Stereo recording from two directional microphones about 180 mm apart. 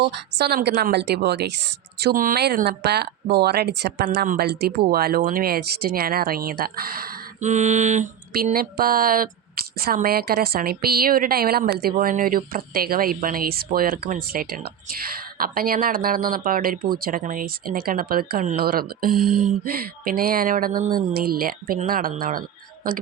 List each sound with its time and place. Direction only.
0.0 s a woman's voice: 65° right (ahead or behind)
2.0 s a woman's voice: 55° right (ahead or behind)